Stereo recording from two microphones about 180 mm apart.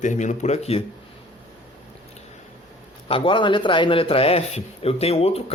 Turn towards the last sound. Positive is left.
turn(degrees=35)  # may be behind; listen again after turning